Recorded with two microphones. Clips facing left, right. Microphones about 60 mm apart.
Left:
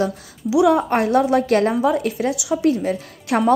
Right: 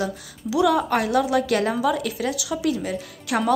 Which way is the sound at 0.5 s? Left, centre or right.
Centre.